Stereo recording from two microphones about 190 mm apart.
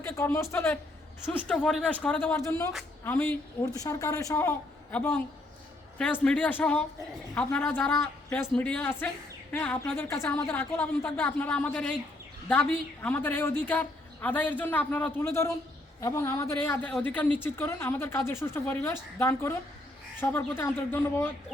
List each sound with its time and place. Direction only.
0.0 s a man's voice: 15° left (ahead or behind)
6.2 s a woman's voice: 5° left (ahead or behind)